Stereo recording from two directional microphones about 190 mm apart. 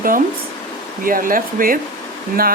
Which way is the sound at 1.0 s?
45° right (ahead or behind).